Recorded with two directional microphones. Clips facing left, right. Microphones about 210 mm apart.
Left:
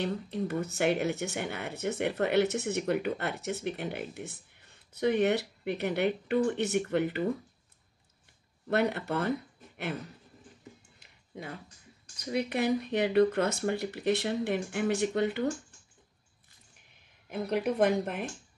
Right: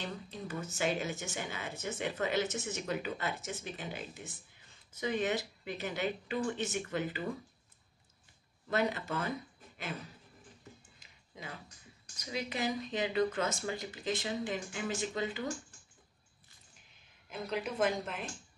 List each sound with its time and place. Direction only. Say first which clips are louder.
0.0 s speech: left 10 dB; 60° left (ahead or behind)
8.6 s speech: left 5 dB; 60° left (ahead or behind)
12.3 s speech: left 7 dB; 60° left (ahead or behind)
17.3 s speech: left 7 dB; 60° left (ahead or behind)